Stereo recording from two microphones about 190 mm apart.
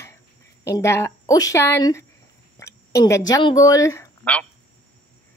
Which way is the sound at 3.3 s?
20° left (ahead or behind).